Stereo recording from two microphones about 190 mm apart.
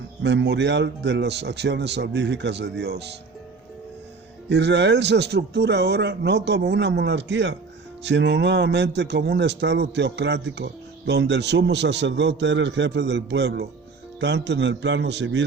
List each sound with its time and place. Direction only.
0.2 s a man's voice: 65° right (ahead or behind)
4.4 s a man's voice: 65° right (ahead or behind)